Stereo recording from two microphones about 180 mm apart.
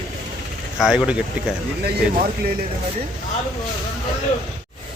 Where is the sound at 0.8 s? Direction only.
5° right (ahead or behind).